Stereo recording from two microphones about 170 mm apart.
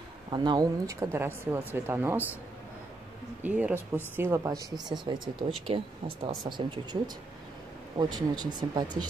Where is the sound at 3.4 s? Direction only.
10° right (ahead or behind).